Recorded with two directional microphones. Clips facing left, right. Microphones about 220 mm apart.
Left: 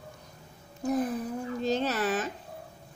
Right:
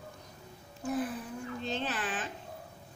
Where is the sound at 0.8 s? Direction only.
40° left (ahead or behind).